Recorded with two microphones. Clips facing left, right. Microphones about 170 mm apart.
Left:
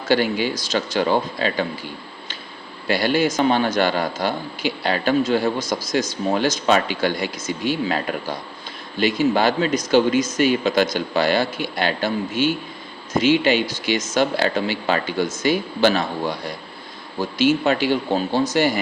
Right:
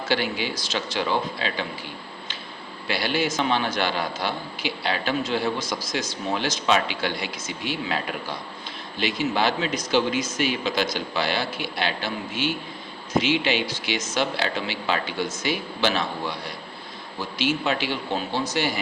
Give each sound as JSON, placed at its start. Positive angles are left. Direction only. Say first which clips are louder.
{"t": 0.1, "sound": "a man's voice", "louder": "left 7 dB", "side_deg": 45}
{"t": 2.8, "sound": "a man's voice", "louder": "left 6 dB", "side_deg": 45}